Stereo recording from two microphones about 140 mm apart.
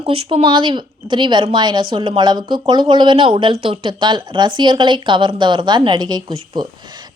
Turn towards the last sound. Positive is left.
turn(degrees=-30)  # may be behind; listen again after turning